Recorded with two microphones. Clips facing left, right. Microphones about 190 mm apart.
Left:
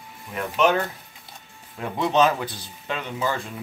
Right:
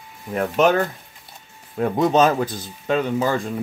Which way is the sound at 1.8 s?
45° right (ahead or behind).